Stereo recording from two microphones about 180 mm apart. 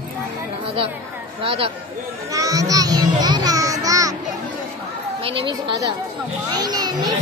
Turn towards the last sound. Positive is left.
turn(degrees=-20)  # may be behind; listen again after turning